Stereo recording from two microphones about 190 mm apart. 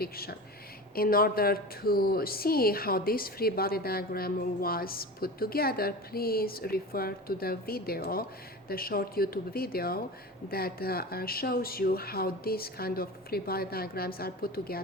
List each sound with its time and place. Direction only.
0.0 s a woman's voice: 55° left (ahead or behind)